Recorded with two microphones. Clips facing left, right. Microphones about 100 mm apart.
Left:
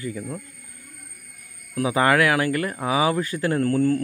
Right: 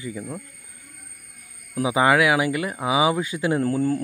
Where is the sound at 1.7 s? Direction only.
15° right (ahead or behind).